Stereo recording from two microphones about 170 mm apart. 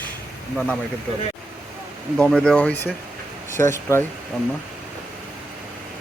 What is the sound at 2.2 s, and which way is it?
Speech, 5° left (ahead or behind).